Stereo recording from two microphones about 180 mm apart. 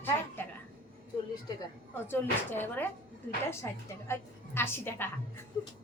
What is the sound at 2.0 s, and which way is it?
A woman's voice, 10° left (ahead or behind).